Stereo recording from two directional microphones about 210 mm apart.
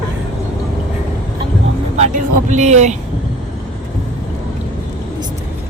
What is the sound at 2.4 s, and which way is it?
Vehicle, 35° right (ahead or behind).